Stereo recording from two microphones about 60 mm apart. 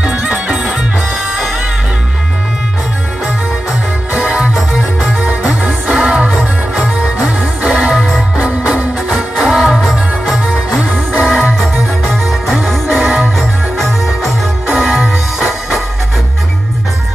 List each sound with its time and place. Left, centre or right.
0.0 s music: centre
4.2 s music: centre
5.9 s music: centre
7.9 s music: centre
9.5 s music: centre